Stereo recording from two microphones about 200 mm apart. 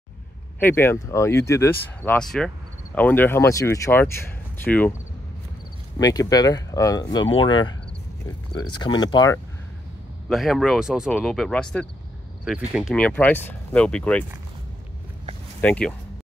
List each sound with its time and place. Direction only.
0.6 s speech: 10° left (ahead or behind)
5.9 s speech: 20° left (ahead or behind)
10.2 s speech: centre (ahead or behind)
15.6 s speech: 5° left (ahead or behind)